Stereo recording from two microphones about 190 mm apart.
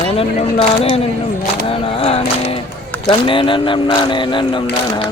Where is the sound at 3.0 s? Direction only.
25° left (ahead or behind).